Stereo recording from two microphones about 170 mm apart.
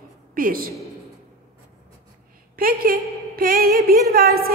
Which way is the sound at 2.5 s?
60° right (ahead or behind).